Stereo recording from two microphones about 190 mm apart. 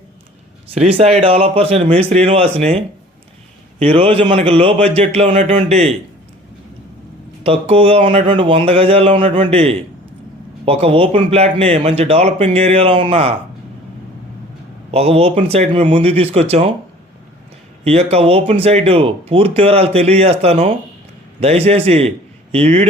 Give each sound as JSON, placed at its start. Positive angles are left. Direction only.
{"t": 0.7, "sound": "speech", "side_deg": -30}
{"t": 7.4, "sound": "speech", "side_deg": -30}
{"t": 14.8, "sound": "speech", "side_deg": -30}
{"t": 17.8, "sound": "speech", "side_deg": -30}